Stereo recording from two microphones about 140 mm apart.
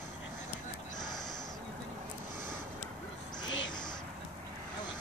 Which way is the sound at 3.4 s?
30° left (ahead or behind).